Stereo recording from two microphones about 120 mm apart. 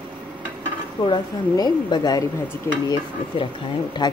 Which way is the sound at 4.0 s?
35° left (ahead or behind).